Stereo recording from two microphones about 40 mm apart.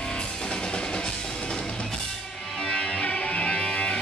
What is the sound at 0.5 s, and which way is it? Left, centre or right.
Music, left.